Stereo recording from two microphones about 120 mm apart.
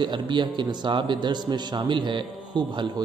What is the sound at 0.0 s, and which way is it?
A man's voice, 40° right (ahead or behind).